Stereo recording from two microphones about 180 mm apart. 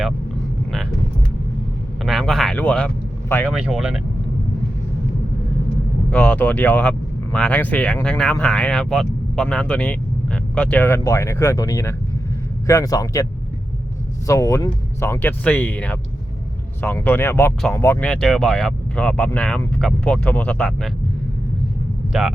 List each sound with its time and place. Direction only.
2.0 s speech: centre (ahead or behind)
3.5 s speech: 5° right (ahead or behind)
6.1 s a man's voice: 5° left (ahead or behind)
14.3 s speech: 15° left (ahead or behind)